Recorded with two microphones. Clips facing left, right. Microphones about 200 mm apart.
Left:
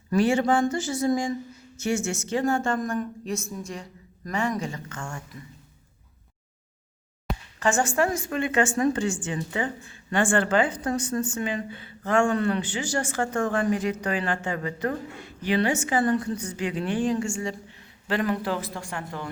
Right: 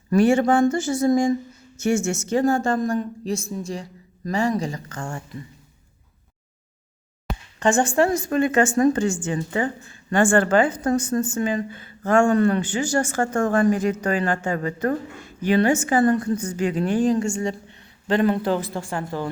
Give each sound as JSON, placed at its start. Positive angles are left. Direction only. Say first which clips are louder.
{"t": 0.1, "sound": "a woman's voice", "louder": "right 4 dB", "side_deg": -50}
{"t": 7.3, "sound": "a sound", "louder": "even", "side_deg": 0}
{"t": 7.6, "sound": "a woman's voice", "louder": "right 5 dB", "side_deg": -30}
{"t": 18.1, "sound": "a woman's voice", "louder": "right 6 dB", "side_deg": -30}